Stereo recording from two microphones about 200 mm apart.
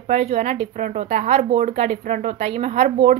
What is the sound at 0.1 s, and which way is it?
Speech, 30° right (ahead or behind).